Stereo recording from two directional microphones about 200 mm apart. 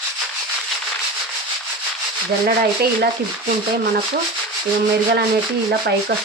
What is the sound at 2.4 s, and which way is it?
Sanding, 50° right (ahead or behind).